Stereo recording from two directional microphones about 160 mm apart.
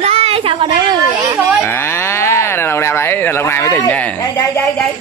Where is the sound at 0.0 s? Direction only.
40° right (ahead or behind).